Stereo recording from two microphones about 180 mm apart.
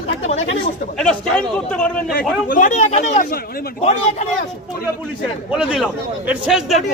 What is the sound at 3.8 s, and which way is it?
Speech, 40° left (ahead or behind).